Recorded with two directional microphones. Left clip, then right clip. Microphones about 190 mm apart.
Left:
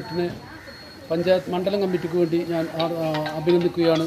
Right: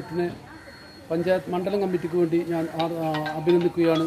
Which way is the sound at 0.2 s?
15° right (ahead or behind).